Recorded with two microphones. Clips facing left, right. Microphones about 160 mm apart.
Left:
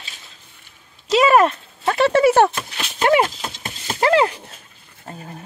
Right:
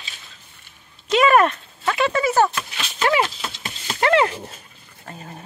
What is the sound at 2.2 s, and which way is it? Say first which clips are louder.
Speech: left 4 dB; 65° left (ahead or behind).